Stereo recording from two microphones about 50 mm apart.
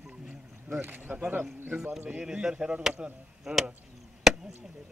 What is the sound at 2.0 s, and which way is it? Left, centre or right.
Speech, centre.